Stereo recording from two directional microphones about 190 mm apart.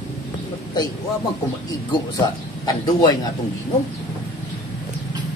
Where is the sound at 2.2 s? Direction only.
20° left (ahead or behind).